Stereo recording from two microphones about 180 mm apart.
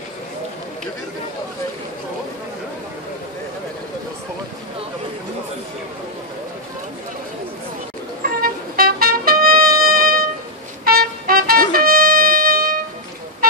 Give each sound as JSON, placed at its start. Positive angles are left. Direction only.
{"t": 8.2, "sound": "music", "side_deg": -55}
{"t": 10.9, "sound": "trumpet", "side_deg": -55}